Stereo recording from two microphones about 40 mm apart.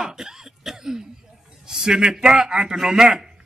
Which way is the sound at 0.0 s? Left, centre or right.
Centre.